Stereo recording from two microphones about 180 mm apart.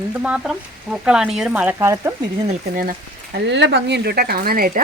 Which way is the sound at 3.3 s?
75° right (ahead or behind).